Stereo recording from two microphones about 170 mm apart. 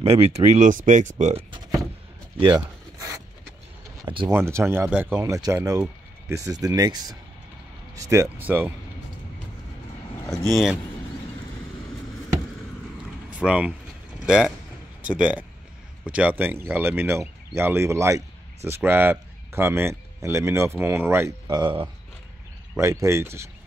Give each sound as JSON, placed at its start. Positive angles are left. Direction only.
{"t": 0.0, "sound": "speech", "side_deg": -35}
{"t": 2.4, "sound": "a sound", "side_deg": -25}
{"t": 4.0, "sound": "speech", "side_deg": -30}
{"t": 4.3, "sound": "speech", "side_deg": -15}
{"t": 10.5, "sound": "speech", "side_deg": 0}
{"t": 13.3, "sound": "speech", "side_deg": -5}
{"t": 21.5, "sound": "speech", "side_deg": -25}
{"t": 22.8, "sound": "speech", "side_deg": -15}